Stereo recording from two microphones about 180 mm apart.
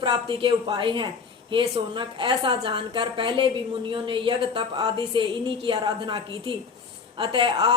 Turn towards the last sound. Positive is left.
turn(degrees=-30)  # may be behind; listen again after turning